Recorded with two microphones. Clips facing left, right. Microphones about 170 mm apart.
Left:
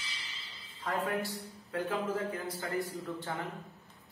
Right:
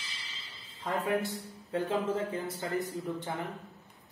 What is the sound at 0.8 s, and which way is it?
A man's voice, 20° right (ahead or behind).